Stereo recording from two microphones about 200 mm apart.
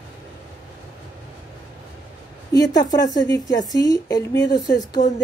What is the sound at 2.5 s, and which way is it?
Speech, 20° left (ahead or behind).